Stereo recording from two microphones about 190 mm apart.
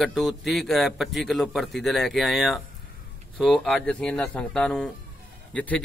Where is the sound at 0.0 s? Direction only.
Centre (ahead or behind).